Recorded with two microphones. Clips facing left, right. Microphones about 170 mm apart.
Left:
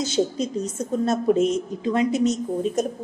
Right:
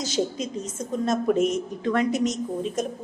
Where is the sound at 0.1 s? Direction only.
35° left (ahead or behind); by 2.0 s 20° left (ahead or behind).